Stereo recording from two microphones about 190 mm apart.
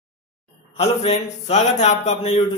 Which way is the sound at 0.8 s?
35° left (ahead or behind).